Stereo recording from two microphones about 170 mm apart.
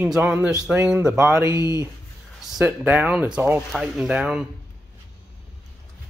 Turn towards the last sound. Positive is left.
turn(degrees=-5)  # may be behind; listen again after turning